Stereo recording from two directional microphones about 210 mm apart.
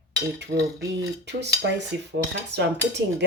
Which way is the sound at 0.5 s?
50° right (ahead or behind).